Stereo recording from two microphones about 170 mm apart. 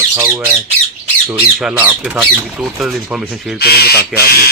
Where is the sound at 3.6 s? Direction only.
65° left (ahead or behind).